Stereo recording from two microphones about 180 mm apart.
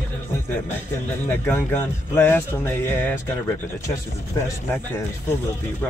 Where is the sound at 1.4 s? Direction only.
10° left (ahead or behind).